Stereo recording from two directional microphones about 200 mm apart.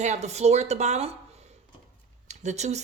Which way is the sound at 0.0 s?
35° right (ahead or behind).